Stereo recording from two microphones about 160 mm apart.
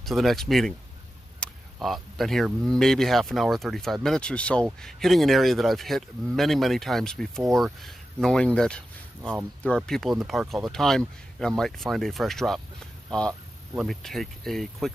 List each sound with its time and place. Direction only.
0.0 s speech: centre (ahead or behind)
13.7 s speech: centre (ahead or behind)